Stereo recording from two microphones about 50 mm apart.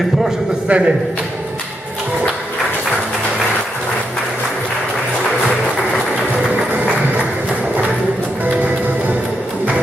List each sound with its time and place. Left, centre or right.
0.7 s a man's voice: right
6.7 s music: right